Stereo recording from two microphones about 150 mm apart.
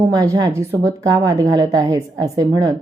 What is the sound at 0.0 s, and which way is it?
A woman's voice, 25° right (ahead or behind).